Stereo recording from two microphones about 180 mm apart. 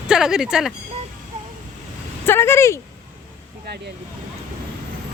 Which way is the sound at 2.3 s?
15° left (ahead or behind).